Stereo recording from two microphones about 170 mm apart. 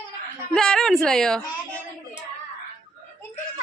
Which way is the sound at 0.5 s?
5° left (ahead or behind).